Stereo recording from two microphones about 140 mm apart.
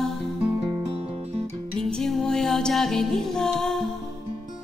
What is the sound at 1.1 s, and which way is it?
Music, 45° right (ahead or behind).